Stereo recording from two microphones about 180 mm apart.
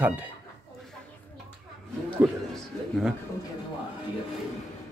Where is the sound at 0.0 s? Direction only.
10° right (ahead or behind).